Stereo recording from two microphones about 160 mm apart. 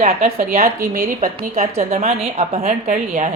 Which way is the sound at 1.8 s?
45° right (ahead or behind).